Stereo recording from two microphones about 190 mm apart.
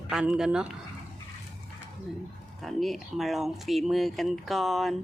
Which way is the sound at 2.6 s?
Centre (ahead or behind).